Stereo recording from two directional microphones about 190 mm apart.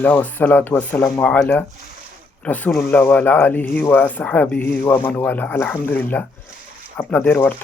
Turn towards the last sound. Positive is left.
turn(degrees=10)  # may be behind; listen again after turning